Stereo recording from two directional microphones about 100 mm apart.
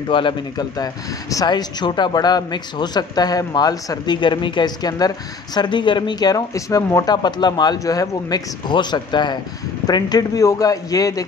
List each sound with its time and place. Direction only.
0.1 s speech: 55° left (ahead or behind)
1.3 s a man's voice: 40° left (ahead or behind)
7.1 s a man's voice: 45° left (ahead or behind)